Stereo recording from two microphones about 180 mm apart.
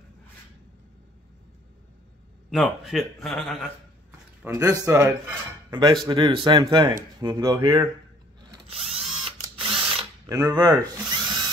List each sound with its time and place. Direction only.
2.5 s a man's voice: centre (ahead or behind)
4.5 s speech: 20° right (ahead or behind)
8.6 s drill: 30° right (ahead or behind)